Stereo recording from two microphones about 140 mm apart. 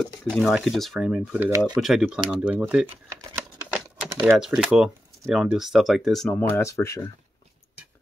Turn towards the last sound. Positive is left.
turn(degrees=20)  # may be behind; listen again after turning